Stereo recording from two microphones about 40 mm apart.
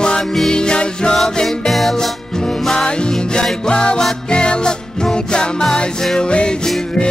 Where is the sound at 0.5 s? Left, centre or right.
Left.